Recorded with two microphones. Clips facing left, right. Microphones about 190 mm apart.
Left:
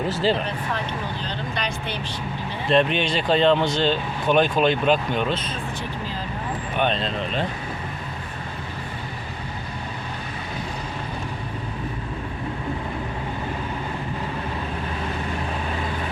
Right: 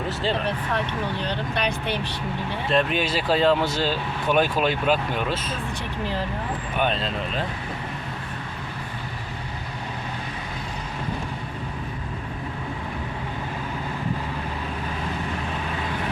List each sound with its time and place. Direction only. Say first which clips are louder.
0.1 s speech: left 5 dB; centre (ahead or behind)
1.2 s speech: right 3 dB; 60° right (ahead or behind)
2.6 s speech: left 3 dB; centre (ahead or behind)
6.7 s speech: left 2 dB; 5° right (ahead or behind)